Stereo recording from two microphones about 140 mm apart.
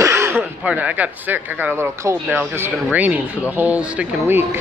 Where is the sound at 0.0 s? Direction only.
20° right (ahead or behind).